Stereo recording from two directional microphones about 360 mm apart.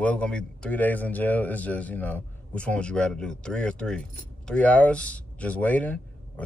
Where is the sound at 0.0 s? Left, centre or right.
Centre.